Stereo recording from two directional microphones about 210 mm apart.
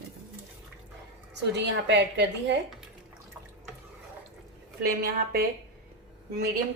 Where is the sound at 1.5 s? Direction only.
55° right (ahead or behind).